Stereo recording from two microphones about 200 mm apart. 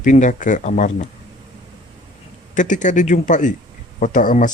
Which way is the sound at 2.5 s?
40° left (ahead or behind).